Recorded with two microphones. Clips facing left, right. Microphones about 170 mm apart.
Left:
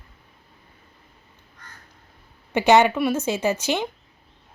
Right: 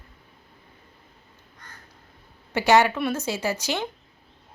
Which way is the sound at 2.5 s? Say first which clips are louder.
Left 3 dB; 20° left (ahead or behind).